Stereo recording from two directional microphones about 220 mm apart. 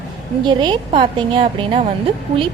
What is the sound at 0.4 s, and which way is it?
A woman's voice, 20° right (ahead or behind).